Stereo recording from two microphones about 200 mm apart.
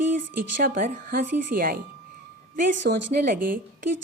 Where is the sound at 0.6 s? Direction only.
45° right (ahead or behind).